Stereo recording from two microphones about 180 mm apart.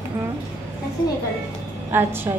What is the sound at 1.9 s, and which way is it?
Speech, 10° right (ahead or behind).